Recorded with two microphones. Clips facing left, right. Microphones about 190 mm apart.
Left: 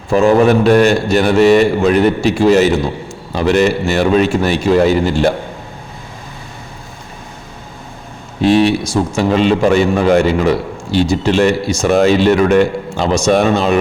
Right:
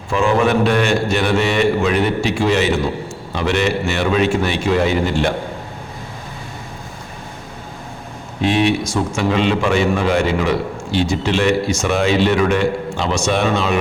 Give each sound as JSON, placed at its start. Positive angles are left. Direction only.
{"t": 0.1, "sound": "a man's voice", "side_deg": 40}
{"t": 8.4, "sound": "a man's voice", "side_deg": 35}